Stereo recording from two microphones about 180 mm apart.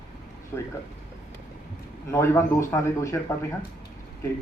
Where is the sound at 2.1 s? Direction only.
15° left (ahead or behind).